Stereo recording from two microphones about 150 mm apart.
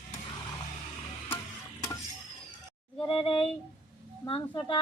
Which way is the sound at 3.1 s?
35° left (ahead or behind).